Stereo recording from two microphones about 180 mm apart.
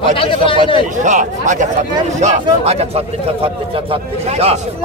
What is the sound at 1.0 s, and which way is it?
A man's voice, 45° right (ahead or behind).